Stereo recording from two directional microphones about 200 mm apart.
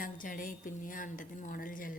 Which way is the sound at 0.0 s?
40° left (ahead or behind).